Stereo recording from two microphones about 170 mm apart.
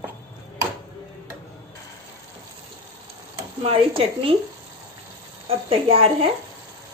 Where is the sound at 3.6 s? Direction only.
35° right (ahead or behind).